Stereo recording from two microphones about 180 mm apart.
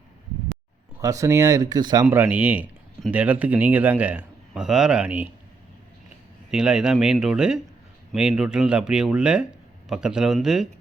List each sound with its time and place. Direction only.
1.0 s a man's voice: 15° right (ahead or behind)
2.0 s a man's voice: 10° right (ahead or behind)
6.5 s speech: 5° right (ahead or behind)